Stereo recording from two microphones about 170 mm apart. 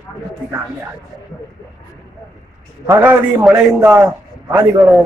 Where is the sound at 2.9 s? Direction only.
10° right (ahead or behind).